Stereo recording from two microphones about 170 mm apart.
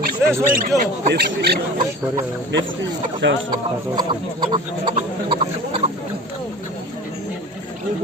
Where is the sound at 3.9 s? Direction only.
25° right (ahead or behind).